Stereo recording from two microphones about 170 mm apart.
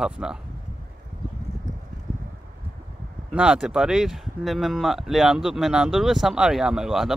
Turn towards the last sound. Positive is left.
turn(degrees=0)  # may be behind; listen again after turning